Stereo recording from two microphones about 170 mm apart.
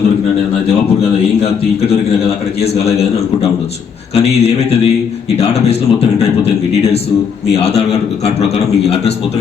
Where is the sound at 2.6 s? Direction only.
35° left (ahead or behind).